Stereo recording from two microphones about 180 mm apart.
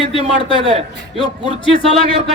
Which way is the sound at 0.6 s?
30° right (ahead or behind).